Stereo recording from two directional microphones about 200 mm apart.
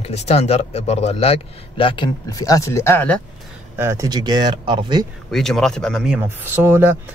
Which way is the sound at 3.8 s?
15° right (ahead or behind).